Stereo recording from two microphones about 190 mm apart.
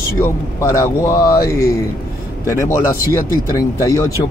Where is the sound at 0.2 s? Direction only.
15° left (ahead or behind).